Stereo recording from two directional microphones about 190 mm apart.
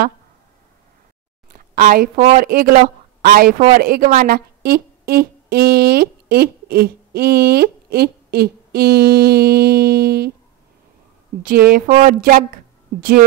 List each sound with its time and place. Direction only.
1.5 s a sound: 50° right (ahead or behind)
2.3 s speech: 50° right (ahead or behind)
11.4 s speech: 50° right (ahead or behind)